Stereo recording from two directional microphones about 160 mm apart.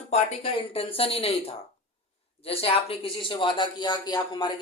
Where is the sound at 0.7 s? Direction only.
35° left (ahead or behind).